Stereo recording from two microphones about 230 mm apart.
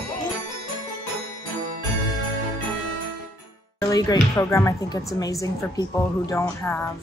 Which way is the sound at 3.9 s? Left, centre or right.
Centre.